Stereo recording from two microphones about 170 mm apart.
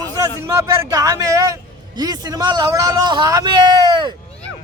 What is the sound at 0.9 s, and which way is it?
A man's voice, 20° right (ahead or behind).